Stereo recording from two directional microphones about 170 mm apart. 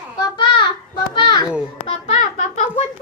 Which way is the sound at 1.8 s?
40° left (ahead or behind).